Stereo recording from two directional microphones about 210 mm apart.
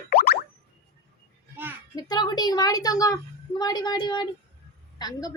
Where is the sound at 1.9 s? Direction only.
20° left (ahead or behind).